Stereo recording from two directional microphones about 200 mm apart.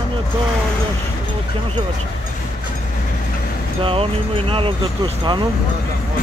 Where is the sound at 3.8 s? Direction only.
30° right (ahead or behind).